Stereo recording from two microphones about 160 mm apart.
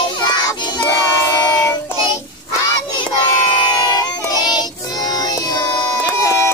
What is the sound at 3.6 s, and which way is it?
Child singing, 25° left (ahead or behind).